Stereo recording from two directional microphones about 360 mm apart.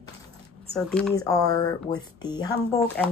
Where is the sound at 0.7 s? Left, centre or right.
Centre.